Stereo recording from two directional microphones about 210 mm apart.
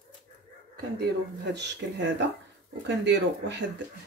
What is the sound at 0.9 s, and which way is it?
Speech, 55° right (ahead or behind).